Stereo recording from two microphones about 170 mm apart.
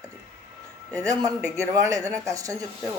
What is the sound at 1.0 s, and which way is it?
Speech, 20° right (ahead or behind).